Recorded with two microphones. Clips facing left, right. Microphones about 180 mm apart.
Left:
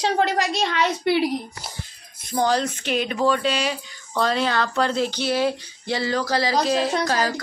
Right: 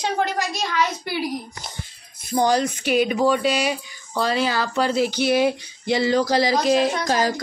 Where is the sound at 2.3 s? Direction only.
15° right (ahead or behind).